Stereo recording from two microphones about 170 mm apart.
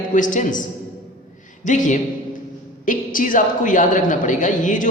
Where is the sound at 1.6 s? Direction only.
45° left (ahead or behind).